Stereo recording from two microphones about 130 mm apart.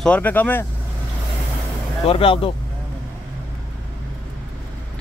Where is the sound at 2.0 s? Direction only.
45° left (ahead or behind).